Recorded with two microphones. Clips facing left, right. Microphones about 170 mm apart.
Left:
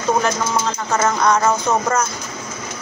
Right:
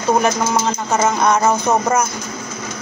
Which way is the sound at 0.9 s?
20° right (ahead or behind).